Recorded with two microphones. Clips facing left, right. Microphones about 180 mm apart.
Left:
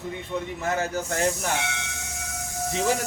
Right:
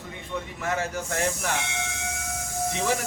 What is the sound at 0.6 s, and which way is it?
Speech, 35° left (ahead or behind).